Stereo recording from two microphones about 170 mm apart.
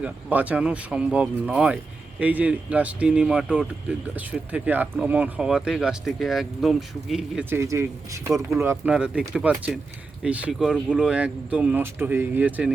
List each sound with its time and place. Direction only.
0.0 s speech: 10° right (ahead or behind)
7.5 s speech: 15° right (ahead or behind)